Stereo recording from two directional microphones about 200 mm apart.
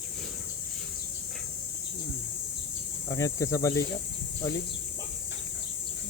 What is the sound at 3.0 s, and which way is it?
Cricket, 15° left (ahead or behind).